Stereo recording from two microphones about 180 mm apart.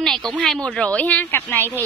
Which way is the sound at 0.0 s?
Centre (ahead or behind).